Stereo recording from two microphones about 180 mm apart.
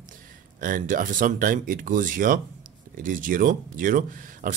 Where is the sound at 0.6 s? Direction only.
50° right (ahead or behind).